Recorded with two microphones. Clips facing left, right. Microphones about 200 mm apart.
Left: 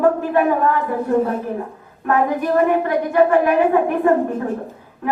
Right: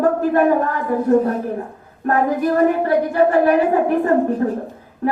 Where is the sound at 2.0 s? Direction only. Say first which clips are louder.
Right 1 dB; 35° right (ahead or behind).